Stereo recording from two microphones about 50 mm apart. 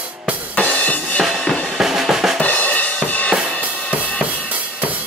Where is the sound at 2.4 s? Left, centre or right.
Left.